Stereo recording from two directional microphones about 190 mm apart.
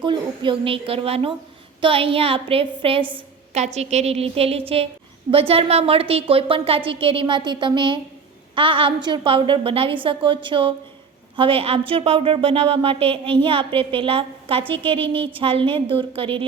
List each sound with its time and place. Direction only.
0.0 s a woman's voice: 25° right (ahead or behind)